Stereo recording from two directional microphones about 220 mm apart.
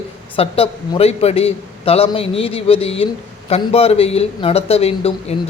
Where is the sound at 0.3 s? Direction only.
25° left (ahead or behind).